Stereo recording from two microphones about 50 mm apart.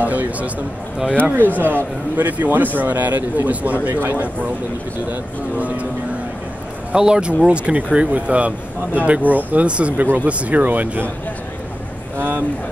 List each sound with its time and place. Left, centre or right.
0.0 s a man's voice: right
3.9 s a man's voice: right
5.1 s a man's voice: right
6.9 s a man's voice: centre
12.2 s a sound: right